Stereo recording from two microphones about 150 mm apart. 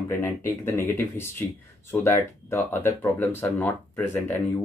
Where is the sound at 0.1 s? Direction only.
15° left (ahead or behind).